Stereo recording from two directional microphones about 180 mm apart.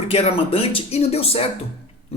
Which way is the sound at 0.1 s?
35° left (ahead or behind).